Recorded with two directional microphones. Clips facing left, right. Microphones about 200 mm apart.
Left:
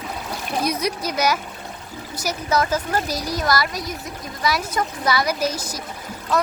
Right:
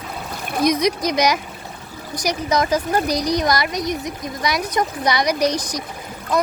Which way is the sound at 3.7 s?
Centre (ahead or behind).